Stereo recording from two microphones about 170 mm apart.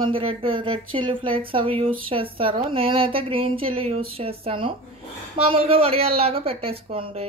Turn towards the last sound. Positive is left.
turn(degrees=-35)  # may be behind; listen again after turning